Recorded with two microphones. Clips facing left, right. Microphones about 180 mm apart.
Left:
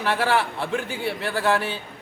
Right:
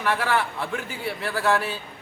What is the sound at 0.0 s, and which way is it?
A man's voice, 30° left (ahead or behind).